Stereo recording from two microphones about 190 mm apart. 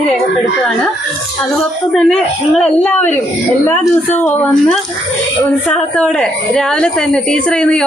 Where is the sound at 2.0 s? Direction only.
5° left (ahead or behind).